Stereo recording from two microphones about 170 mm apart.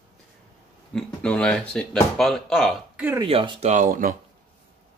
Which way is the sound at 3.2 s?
30° right (ahead or behind).